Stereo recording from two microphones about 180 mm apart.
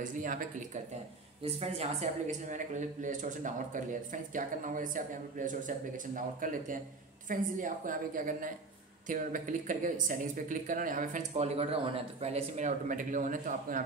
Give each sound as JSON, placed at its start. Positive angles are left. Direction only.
{"t": 0.0, "sound": "speech", "side_deg": -45}
{"t": 1.4, "sound": "speech", "side_deg": -35}